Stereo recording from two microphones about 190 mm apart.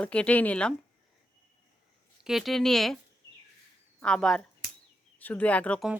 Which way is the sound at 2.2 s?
Centre (ahead or behind).